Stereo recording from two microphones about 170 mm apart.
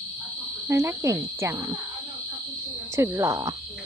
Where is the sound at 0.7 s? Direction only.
15° right (ahead or behind).